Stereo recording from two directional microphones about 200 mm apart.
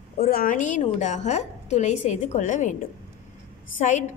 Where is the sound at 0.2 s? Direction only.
45° left (ahead or behind).